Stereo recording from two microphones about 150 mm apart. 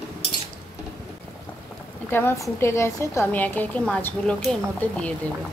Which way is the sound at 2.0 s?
15° left (ahead or behind).